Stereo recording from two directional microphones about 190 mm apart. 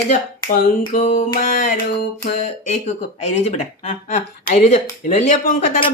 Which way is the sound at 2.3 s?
35° left (ahead or behind).